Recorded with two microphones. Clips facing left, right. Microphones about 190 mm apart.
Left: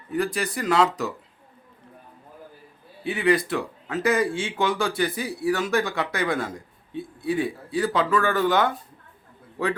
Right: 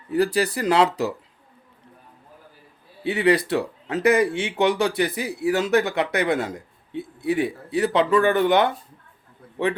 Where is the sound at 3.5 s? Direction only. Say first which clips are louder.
Right 4 dB; 35° right (ahead or behind).